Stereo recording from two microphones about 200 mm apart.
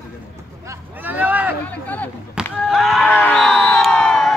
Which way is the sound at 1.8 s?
10° left (ahead or behind).